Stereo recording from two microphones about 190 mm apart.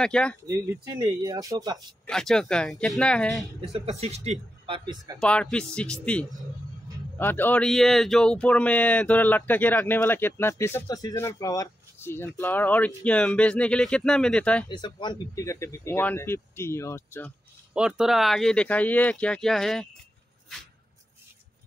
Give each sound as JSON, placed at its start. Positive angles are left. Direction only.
{"t": 0.0, "sound": "speech", "side_deg": 5}
{"t": 0.5, "sound": "speech", "side_deg": -15}
{"t": 2.0, "sound": "speech", "side_deg": 5}
{"t": 3.7, "sound": "speech", "side_deg": -35}
{"t": 5.2, "sound": "speech", "side_deg": 5}
{"t": 14.7, "sound": "speech", "side_deg": 25}
{"t": 17.7, "sound": "speech", "side_deg": -5}